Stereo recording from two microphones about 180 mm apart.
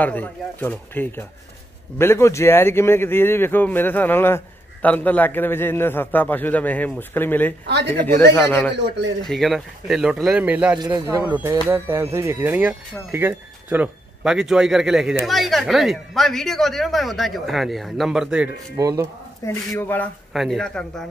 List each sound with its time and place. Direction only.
0.0 s a man's voice: 10° left (ahead or behind)
7.6 s speech: 70° right (ahead or behind)
7.9 s a man's voice: 10° left (ahead or behind); by 18.5 s 5° right (ahead or behind)
18.8 s speech: 20° right (ahead or behind)
19.4 s a man's voice: 15° left (ahead or behind)